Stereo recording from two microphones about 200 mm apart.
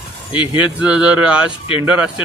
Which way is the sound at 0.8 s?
5° right (ahead or behind).